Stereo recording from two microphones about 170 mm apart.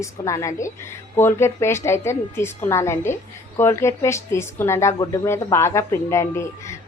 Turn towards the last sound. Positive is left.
turn(degrees=15)  # may be behind; listen again after turning